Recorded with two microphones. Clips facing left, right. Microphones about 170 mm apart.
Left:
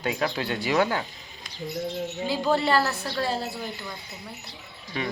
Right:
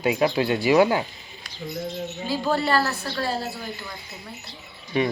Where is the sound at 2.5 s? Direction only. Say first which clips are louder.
Even; 20° left (ahead or behind).